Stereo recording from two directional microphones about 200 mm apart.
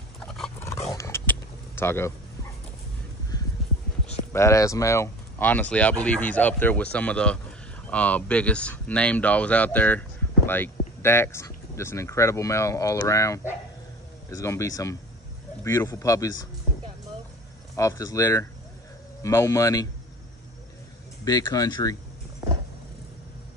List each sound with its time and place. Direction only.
0.3 s dog: 5° left (ahead or behind)
0.9 s a sound: 15° left (ahead or behind)
3.3 s music: 20° left (ahead or behind)
4.3 s speech: 15° left (ahead or behind)
17.7 s speech: 15° left (ahead or behind)
21.2 s speech: 20° left (ahead or behind)